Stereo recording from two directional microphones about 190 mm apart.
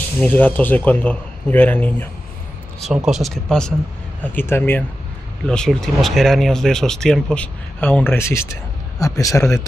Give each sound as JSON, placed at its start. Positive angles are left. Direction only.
{"t": 0.2, "sound": "a man's voice", "side_deg": 10}
{"t": 3.1, "sound": "a man's voice", "side_deg": 0}